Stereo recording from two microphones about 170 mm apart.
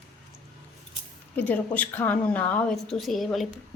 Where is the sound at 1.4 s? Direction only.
10° left (ahead or behind).